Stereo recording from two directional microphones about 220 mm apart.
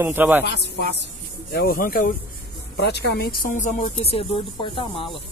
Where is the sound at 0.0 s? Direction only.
10° right (ahead or behind).